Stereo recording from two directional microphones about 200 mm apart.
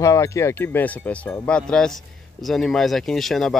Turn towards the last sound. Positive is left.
turn(degrees=0)  # may be behind; listen again after turning